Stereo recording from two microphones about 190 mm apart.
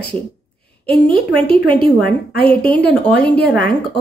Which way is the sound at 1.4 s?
30° right (ahead or behind).